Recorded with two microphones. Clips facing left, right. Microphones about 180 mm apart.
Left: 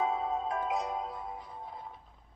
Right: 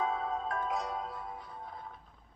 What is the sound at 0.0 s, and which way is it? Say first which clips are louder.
Music: left 2 dB; 20° left (ahead or behind).